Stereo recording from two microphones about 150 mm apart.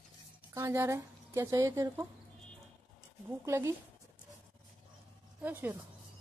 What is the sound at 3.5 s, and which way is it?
Speech, 20° right (ahead or behind).